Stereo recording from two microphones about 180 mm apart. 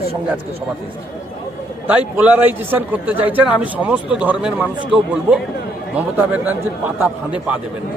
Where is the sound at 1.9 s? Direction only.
10° right (ahead or behind).